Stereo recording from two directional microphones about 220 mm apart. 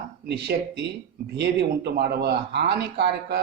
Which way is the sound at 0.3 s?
50° right (ahead or behind).